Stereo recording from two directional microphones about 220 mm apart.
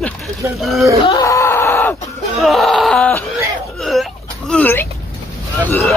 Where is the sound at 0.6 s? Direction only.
Centre (ahead or behind).